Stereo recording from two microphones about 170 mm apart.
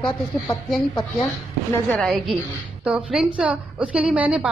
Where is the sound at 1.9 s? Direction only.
Centre (ahead or behind).